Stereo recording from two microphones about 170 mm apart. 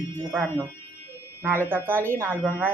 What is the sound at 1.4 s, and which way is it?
Speech, 15° right (ahead or behind).